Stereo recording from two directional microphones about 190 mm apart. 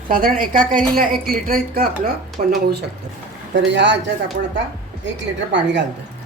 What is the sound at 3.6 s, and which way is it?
Speech, 70° right (ahead or behind).